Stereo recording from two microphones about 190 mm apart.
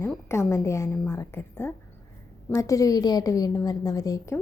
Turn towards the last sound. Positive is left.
turn(degrees=15)  # may be behind; listen again after turning